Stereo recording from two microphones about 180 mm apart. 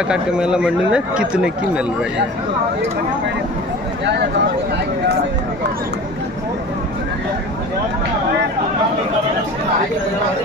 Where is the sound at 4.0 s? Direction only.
70° right (ahead or behind).